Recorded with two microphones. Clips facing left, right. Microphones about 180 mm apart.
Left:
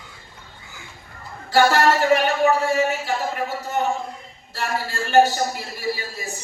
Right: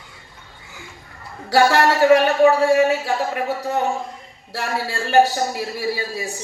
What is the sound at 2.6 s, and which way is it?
Speech, 75° right (ahead or behind).